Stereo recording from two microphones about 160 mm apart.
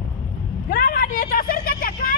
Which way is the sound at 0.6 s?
65° left (ahead or behind).